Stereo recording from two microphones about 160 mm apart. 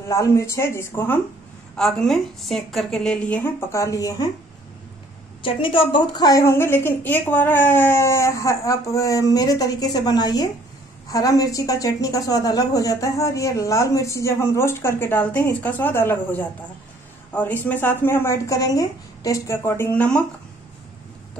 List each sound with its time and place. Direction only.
0.1 s speech: 20° left (ahead or behind)
1.8 s a woman's voice: centre (ahead or behind); by 4.3 s 25° left (ahead or behind)
5.4 s a woman's voice: 35° left (ahead or behind); by 20.2 s 10° left (ahead or behind)